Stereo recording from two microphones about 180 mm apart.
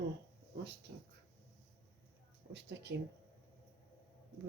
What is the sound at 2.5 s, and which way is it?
Speech, 75° right (ahead or behind).